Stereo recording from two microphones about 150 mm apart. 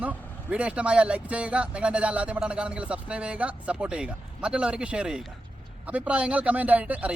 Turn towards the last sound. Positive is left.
turn(degrees=-10)  # may be behind; listen again after turning